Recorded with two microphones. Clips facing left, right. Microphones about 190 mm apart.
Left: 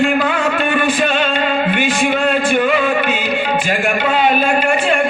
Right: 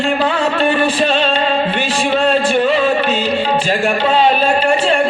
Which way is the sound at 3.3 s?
35° right (ahead or behind).